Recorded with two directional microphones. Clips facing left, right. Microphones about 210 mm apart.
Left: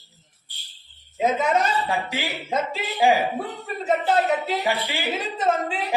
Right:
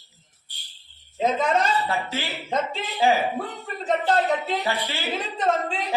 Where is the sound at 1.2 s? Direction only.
10° left (ahead or behind).